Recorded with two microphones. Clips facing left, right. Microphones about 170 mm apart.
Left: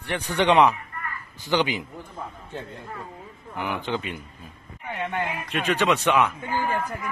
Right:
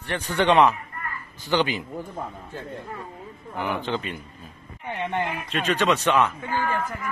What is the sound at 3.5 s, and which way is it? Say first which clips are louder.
Speech: right 1 dB; 15° left (ahead or behind).